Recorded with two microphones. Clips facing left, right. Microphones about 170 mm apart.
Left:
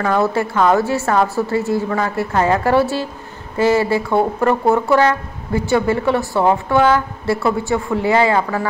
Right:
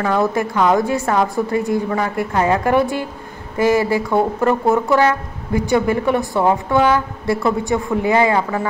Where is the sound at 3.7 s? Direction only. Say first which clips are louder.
Even; 25° left (ahead or behind).